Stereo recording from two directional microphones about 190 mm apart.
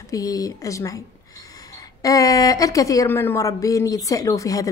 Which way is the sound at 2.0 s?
20° left (ahead or behind).